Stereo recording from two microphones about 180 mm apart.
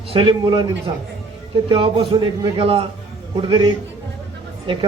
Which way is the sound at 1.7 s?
25° right (ahead or behind).